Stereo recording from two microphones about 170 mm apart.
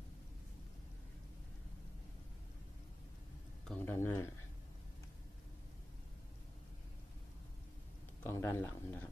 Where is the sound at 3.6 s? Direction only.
10° left (ahead or behind).